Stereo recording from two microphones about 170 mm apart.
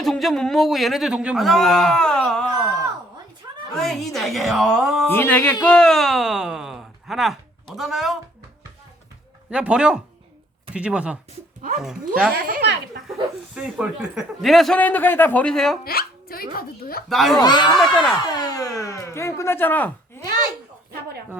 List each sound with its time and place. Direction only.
0.0 s a man's voice: centre (ahead or behind)
3.4 s a sound: 20° right (ahead or behind)
3.8 s a man's voice: centre (ahead or behind)
5.0 s a man's voice: 10° left (ahead or behind)
9.5 s a man's voice: 5° right (ahead or behind)
12.3 s speech: 70° right (ahead or behind)
13.5 s a man's voice: 5° right (ahead or behind)
15.8 s speech: 60° left (ahead or behind)
17.1 s a man's voice: centre (ahead or behind)
17.3 s speech: 25° left (ahead or behind)
17.7 s a man's voice: centre (ahead or behind)
18.2 s speech: 25° left (ahead or behind)